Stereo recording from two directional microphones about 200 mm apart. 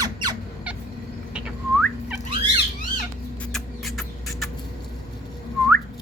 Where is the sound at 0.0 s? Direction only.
20° right (ahead or behind).